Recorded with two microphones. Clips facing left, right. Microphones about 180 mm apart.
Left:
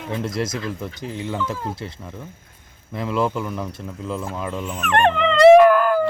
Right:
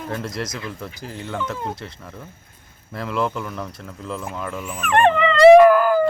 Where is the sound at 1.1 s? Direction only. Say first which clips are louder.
Left 3 dB; 20° left (ahead or behind).